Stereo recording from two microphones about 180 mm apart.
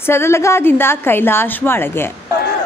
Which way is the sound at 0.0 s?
15° left (ahead or behind).